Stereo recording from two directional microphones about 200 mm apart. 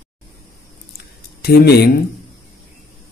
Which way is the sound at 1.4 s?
55° left (ahead or behind).